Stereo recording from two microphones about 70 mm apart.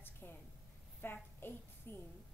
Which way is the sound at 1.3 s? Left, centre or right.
Left.